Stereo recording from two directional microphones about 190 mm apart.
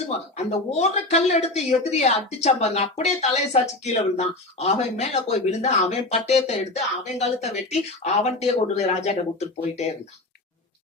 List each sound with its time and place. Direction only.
0.3 s speech: 35° left (ahead or behind)